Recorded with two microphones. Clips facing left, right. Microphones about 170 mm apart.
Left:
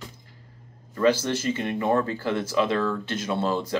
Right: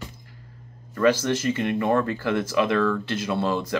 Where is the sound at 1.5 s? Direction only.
20° left (ahead or behind).